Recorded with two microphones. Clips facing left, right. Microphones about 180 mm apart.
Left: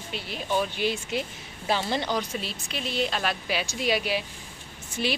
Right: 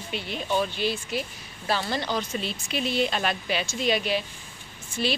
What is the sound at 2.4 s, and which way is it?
A woman's voice, centre (ahead or behind).